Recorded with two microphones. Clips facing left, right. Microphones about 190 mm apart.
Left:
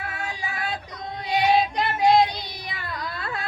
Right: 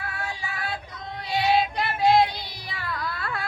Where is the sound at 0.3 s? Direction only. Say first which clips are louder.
Left 3 dB; 15° left (ahead or behind).